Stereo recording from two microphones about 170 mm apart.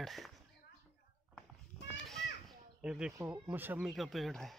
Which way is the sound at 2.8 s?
5° right (ahead or behind).